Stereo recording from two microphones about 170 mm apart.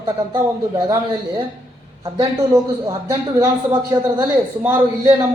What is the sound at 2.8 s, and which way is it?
A man's voice, 20° right (ahead or behind).